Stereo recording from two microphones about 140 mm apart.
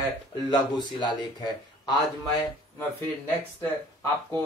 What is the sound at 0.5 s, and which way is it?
Speech, 30° left (ahead or behind).